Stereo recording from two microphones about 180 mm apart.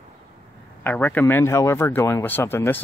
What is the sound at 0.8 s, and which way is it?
A man's voice, 10° left (ahead or behind).